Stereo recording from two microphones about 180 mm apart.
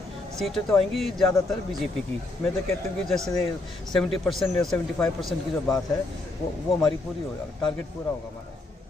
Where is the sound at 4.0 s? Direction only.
Centre (ahead or behind).